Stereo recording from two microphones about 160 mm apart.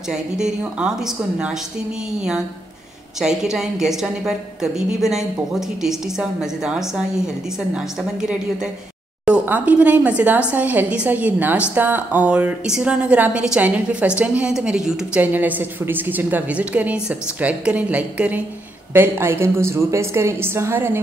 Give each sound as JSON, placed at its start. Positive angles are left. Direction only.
{"t": 0.1, "sound": "a woman's voice", "side_deg": -5}
{"t": 3.2, "sound": "a woman's voice", "side_deg": -5}